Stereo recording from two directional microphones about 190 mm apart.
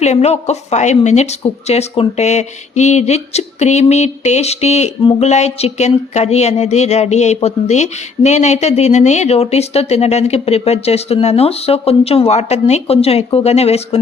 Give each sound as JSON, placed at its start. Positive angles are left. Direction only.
{"t": 0.0, "sound": "a woman's voice", "side_deg": 35}